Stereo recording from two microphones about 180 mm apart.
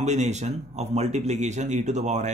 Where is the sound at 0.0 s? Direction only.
40° right (ahead or behind).